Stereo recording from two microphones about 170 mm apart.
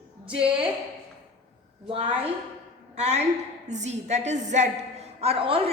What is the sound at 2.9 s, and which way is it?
A woman's voice, 40° right (ahead or behind).